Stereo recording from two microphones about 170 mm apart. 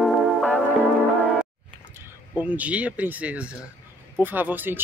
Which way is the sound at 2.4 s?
10° right (ahead or behind).